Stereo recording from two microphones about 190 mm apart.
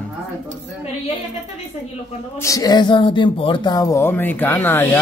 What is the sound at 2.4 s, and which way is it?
Speech, 20° left (ahead or behind).